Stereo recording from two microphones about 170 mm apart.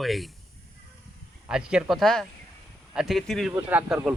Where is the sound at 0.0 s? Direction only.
Centre (ahead or behind).